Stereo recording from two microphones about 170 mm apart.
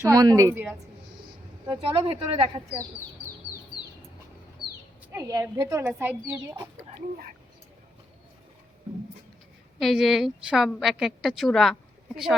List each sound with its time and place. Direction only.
0.0 s a child's voice: 20° right (ahead or behind)
1.6 s speech: 30° right (ahead or behind)
4.6 s bird: centre (ahead or behind)
5.1 s a woman's voice: 20° right (ahead or behind)
9.7 s a woman's voice: centre (ahead or behind)